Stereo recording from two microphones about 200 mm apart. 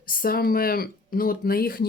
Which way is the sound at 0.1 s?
45° left (ahead or behind).